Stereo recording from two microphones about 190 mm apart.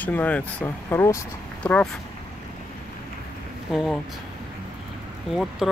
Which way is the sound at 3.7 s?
Centre (ahead or behind).